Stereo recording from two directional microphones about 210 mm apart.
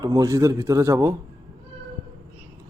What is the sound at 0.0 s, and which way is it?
A man's voice, 15° right (ahead or behind).